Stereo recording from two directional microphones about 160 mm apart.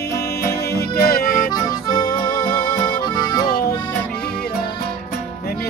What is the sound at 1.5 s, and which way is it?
Accordion, 25° left (ahead or behind).